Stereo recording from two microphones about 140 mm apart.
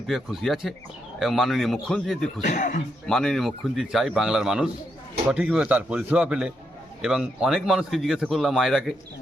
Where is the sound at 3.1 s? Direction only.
5° left (ahead or behind).